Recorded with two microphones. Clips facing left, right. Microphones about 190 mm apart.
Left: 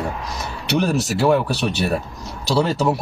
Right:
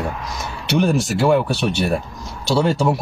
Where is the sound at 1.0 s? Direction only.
5° left (ahead or behind).